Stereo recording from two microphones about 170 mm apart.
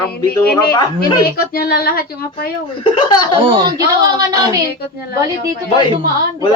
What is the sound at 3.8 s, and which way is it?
Speech, 20° right (ahead or behind).